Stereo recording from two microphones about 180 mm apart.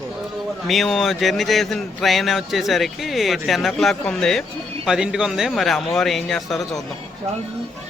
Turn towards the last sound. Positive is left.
turn(degrees=0)  # may be behind; listen again after turning